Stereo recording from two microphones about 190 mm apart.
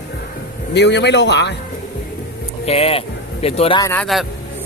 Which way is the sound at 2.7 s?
30° left (ahead or behind).